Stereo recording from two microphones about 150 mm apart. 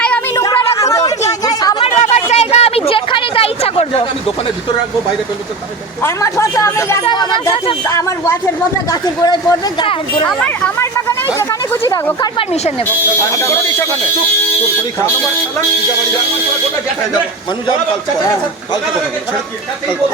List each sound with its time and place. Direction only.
0.7 s chatter: 20° left (ahead or behind)
1.5 s a sound: 25° left (ahead or behind)
1.8 s a sound: 45° left (ahead or behind)
6.0 s speech: 20° left (ahead or behind)
7.0 s speech: 30° left (ahead or behind)
7.9 s speech: 20° left (ahead or behind); by 10.2 s 35° left (ahead or behind)
10.2 s speech: 5° left (ahead or behind)
10.8 s speech: 20° left (ahead or behind)